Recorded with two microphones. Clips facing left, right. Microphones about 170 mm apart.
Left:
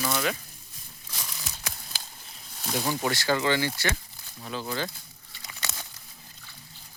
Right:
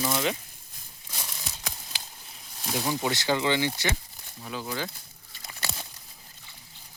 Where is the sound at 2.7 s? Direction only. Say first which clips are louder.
Even; centre (ahead or behind).